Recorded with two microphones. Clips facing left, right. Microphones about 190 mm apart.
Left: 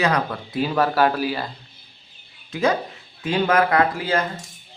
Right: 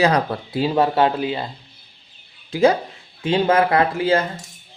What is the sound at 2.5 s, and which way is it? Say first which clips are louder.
Speech: right 5 dB; 30° right (ahead or behind).